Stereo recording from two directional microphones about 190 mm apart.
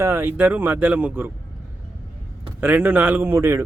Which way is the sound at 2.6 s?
10° right (ahead or behind).